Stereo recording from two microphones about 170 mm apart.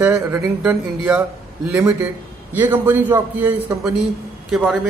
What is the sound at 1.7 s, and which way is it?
A man's voice, 20° right (ahead or behind).